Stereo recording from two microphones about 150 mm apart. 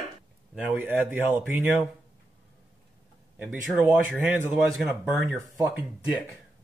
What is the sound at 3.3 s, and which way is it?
Speech, 5° right (ahead or behind).